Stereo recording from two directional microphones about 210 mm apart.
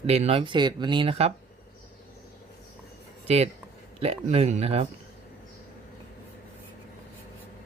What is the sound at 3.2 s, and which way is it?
Speech, 30° right (ahead or behind).